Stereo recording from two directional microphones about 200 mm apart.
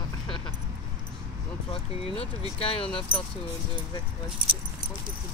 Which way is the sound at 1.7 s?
30° left (ahead or behind).